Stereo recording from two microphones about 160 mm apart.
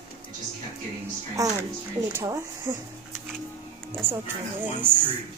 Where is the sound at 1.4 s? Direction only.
20° right (ahead or behind).